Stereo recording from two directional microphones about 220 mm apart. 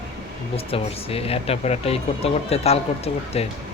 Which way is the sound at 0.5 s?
25° left (ahead or behind).